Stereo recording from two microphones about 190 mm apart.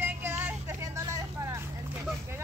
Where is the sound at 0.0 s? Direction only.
10° right (ahead or behind).